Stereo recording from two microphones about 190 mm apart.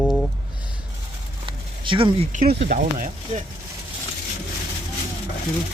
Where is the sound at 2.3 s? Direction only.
45° right (ahead or behind).